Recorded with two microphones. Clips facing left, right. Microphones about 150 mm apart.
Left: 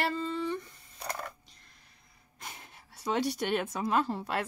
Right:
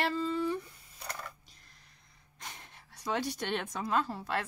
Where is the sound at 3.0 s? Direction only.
15° left (ahead or behind).